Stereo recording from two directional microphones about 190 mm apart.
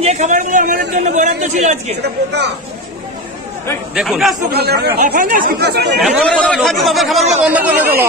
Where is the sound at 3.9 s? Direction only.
Centre (ahead or behind).